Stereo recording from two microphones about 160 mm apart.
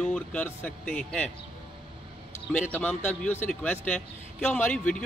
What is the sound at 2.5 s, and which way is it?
Speech, 10° left (ahead or behind).